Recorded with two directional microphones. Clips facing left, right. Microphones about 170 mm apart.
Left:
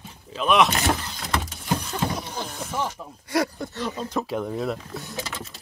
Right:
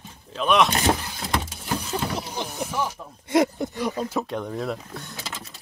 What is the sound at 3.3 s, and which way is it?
Speech, 20° right (ahead or behind).